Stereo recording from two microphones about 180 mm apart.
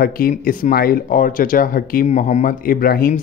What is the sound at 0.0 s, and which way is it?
Speech, 55° left (ahead or behind).